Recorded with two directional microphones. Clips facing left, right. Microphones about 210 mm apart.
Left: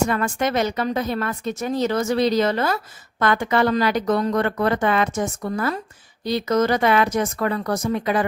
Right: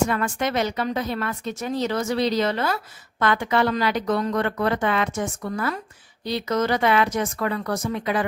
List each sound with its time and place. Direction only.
0.1 s a woman's voice: 45° left (ahead or behind)